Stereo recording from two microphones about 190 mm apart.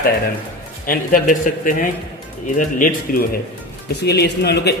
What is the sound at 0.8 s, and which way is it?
A man's voice, 45° left (ahead or behind).